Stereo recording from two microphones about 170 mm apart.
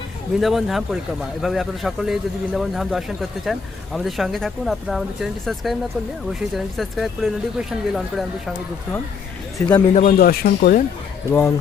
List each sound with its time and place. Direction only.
0.3 s speech: centre (ahead or behind)
9.8 s speech: 40° left (ahead or behind)
10.2 s speech: 60° left (ahead or behind)
11.3 s speech: 15° left (ahead or behind)